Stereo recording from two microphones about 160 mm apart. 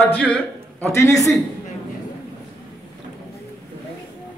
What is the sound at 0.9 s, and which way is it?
Speech, 20° left (ahead or behind).